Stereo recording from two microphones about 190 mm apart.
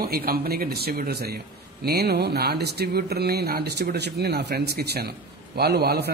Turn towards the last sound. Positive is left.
turn(degrees=-55)  # may be behind; listen again after turning